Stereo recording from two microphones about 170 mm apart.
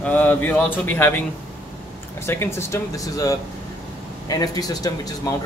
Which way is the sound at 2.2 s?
15° left (ahead or behind).